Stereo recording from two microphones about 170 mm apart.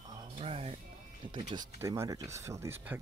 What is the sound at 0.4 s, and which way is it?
Music, 35° right (ahead or behind).